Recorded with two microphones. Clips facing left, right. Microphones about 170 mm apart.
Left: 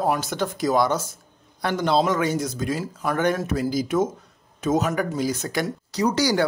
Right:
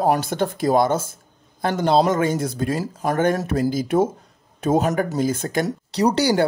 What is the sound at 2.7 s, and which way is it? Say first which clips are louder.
Speech: right 3 dB; 40° right (ahead or behind).